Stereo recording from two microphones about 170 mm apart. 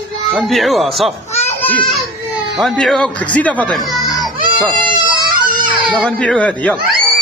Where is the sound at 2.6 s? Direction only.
Centre (ahead or behind).